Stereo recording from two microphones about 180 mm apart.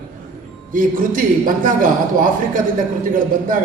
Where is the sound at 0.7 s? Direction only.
50° right (ahead or behind).